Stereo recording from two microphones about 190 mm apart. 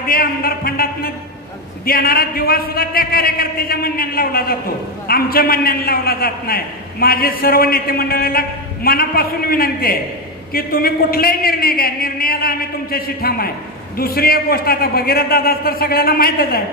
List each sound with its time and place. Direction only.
0.0 s a man's voice: 50° left (ahead or behind)